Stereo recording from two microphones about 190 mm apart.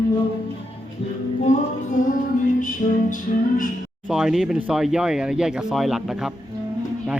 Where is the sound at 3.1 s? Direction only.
45° left (ahead or behind).